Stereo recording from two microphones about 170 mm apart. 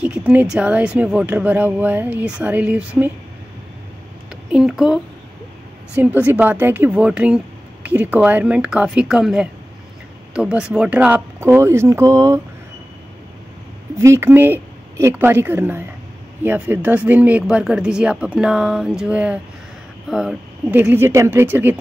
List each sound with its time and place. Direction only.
0.0 s speech: 5° right (ahead or behind)
4.5 s speech: 5° right (ahead or behind)
13.9 s speech: 15° right (ahead or behind)